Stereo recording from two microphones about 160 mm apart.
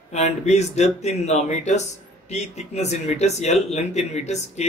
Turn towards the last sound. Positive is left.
turn(degrees=45)  # may be behind; listen again after turning